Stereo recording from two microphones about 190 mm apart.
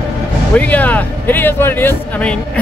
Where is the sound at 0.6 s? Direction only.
10° left (ahead or behind).